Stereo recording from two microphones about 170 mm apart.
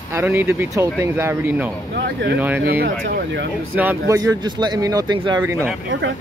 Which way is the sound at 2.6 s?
65° right (ahead or behind).